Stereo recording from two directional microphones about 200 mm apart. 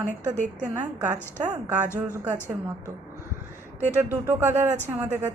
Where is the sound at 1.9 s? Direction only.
5° right (ahead or behind).